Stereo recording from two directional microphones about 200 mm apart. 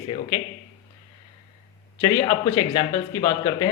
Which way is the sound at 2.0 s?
20° left (ahead or behind).